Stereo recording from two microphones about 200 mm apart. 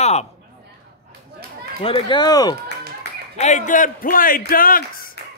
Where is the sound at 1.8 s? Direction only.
25° left (ahead or behind).